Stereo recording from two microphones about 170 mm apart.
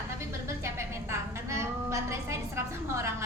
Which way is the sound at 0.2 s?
15° right (ahead or behind).